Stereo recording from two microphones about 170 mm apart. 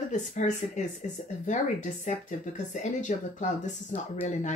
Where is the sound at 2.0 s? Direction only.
45° left (ahead or behind).